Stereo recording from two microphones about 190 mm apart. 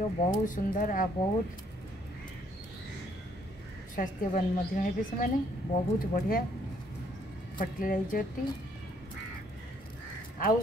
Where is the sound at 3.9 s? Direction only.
45° left (ahead or behind).